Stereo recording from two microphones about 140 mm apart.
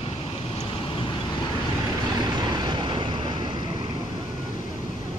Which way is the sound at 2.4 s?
30° right (ahead or behind).